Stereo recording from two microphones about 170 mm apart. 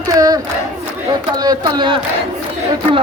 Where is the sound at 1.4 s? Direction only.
25° right (ahead or behind).